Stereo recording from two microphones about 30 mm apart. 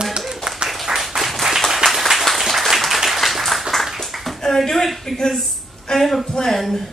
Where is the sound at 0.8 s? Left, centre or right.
Centre.